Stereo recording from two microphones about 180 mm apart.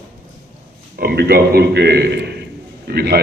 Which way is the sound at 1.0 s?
60° right (ahead or behind).